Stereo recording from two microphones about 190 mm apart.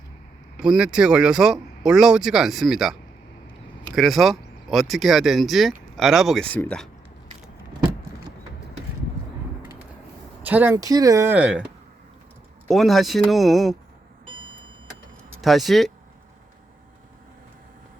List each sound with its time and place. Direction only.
0.6 s speech: 5° right (ahead or behind)
3.9 s speech: centre (ahead or behind)
10.4 s speech: 10° right (ahead or behind)
12.6 s speech: centre (ahead or behind)
15.4 s speech: centre (ahead or behind)